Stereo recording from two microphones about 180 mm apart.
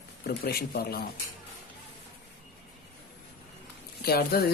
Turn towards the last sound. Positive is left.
turn(degrees=60)  # may be behind; listen again after turning